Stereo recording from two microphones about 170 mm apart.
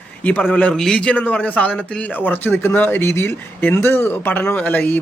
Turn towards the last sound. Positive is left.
turn(degrees=10)  # may be behind; listen again after turning